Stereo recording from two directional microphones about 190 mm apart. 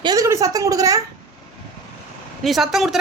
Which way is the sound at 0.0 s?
20° right (ahead or behind).